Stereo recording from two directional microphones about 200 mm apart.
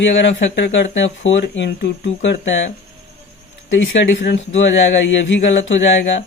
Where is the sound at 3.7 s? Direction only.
65° left (ahead or behind).